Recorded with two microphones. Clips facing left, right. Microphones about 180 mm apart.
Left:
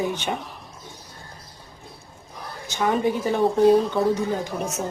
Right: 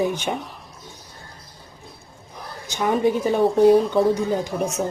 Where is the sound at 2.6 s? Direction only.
15° right (ahead or behind).